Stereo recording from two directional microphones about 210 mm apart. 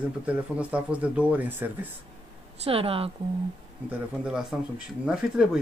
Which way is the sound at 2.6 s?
25° right (ahead or behind).